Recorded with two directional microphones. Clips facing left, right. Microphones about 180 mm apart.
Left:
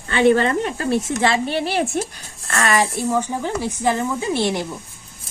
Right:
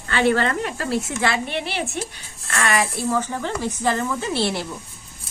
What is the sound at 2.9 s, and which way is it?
Speech, 15° left (ahead or behind).